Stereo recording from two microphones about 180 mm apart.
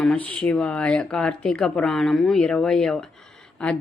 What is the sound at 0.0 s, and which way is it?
A woman's voice, 5° left (ahead or behind).